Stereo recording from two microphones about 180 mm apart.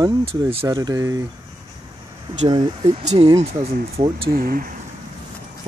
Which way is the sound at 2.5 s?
30° right (ahead or behind).